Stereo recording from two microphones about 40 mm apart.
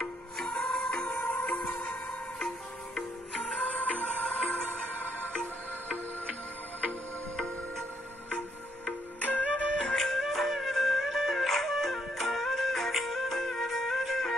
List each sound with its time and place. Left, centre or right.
0.0 s music: centre
0.8 s music: left
1.1 s music: left
1.4 s music: left
1.9 s music: centre
3.5 s music: left
9.2 s music: left
9.9 s music: centre